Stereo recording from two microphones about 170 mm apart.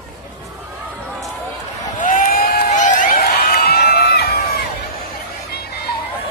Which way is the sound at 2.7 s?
45° left (ahead or behind).